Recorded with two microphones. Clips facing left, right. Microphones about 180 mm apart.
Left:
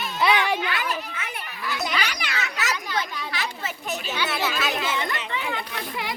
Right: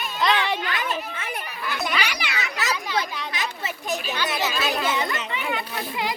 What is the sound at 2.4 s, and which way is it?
Children playing, 35° right (ahead or behind).